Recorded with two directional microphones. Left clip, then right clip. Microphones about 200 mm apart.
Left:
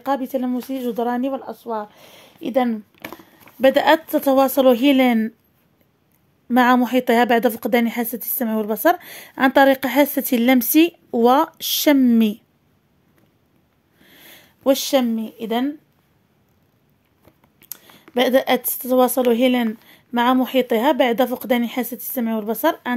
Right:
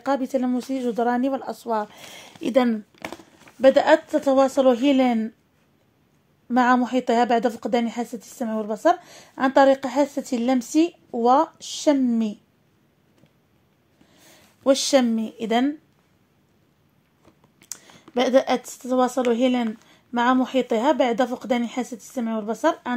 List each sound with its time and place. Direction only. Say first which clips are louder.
0.0 s speech: left 1 dB; 10° left (ahead or behind)
3.6 s a woman's voice: left 1 dB; 30° left (ahead or behind)
6.5 s a woman's voice: left 3 dB; 25° left (ahead or behind)
14.0 s a sound: left 7 dB; 40° left (ahead or behind)
14.6 s speech: left 1 dB; 15° left (ahead or behind)
17.6 s a woman's voice: right 2 dB; 10° left (ahead or behind); by 22.9 s 25° left (ahead or behind)